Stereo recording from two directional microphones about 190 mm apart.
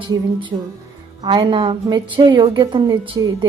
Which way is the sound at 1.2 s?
25° right (ahead or behind).